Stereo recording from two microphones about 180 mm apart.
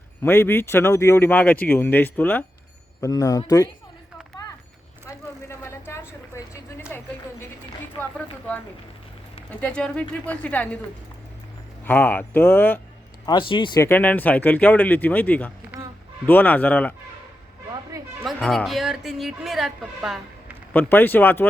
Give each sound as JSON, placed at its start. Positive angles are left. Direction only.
{"t": 0.2, "sound": "speech", "side_deg": 15}
{"t": 5.0, "sound": "vehicle", "side_deg": 15}
{"t": 6.9, "sound": "a sound", "side_deg": 10}
{"t": 9.5, "sound": "speech", "side_deg": 5}
{"t": 11.9, "sound": "speech", "side_deg": 10}
{"t": 13.2, "sound": "speech", "side_deg": 25}
{"t": 13.8, "sound": "speech", "side_deg": 10}
{"t": 18.2, "sound": "speech", "side_deg": 0}
{"t": 20.7, "sound": "speech", "side_deg": 10}